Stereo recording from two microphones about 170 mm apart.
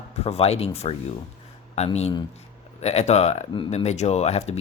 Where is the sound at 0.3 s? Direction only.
35° left (ahead or behind).